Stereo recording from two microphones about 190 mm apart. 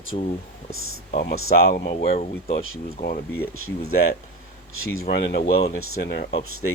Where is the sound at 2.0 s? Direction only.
30° left (ahead or behind).